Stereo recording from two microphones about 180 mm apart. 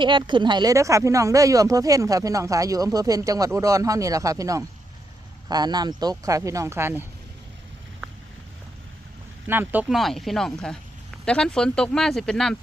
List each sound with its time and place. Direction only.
0.0 s speech: 25° right (ahead or behind)
9.5 s speech: 10° right (ahead or behind)